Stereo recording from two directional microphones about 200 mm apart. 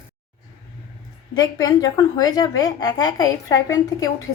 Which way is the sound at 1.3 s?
20° left (ahead or behind).